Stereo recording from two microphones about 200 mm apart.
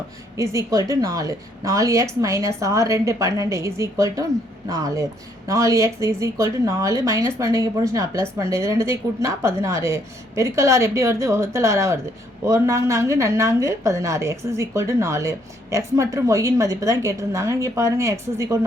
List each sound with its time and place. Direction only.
0.3 s a woman's voice: 15° right (ahead or behind)
5.5 s a woman's voice: 15° right (ahead or behind)